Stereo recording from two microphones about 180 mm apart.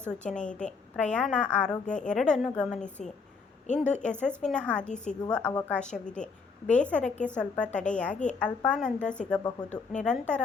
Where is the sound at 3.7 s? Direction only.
40° left (ahead or behind).